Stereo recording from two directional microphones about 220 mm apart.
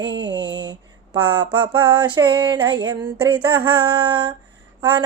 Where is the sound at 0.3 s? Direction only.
20° right (ahead or behind).